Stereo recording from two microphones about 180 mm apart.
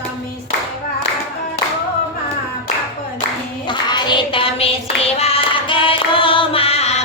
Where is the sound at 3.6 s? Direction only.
25° left (ahead or behind).